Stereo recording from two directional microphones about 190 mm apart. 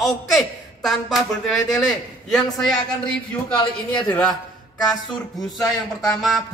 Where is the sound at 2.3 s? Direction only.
Centre (ahead or behind).